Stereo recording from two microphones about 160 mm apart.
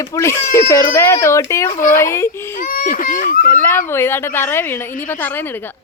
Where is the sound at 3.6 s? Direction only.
15° left (ahead or behind).